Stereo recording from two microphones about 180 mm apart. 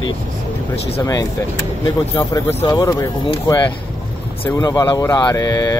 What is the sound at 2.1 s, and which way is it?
Speech, 25° left (ahead or behind).